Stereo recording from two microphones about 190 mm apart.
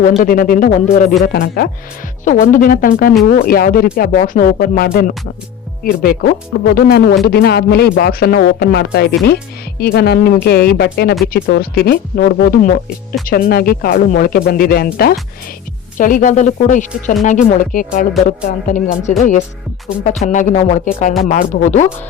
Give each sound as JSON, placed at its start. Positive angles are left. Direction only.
{"t": 0.2, "sound": "speech", "side_deg": 50}
{"t": 1.2, "sound": "speech", "side_deg": 55}
{"t": 16.0, "sound": "speech", "side_deg": 45}
{"t": 20.1, "sound": "speech", "side_deg": 35}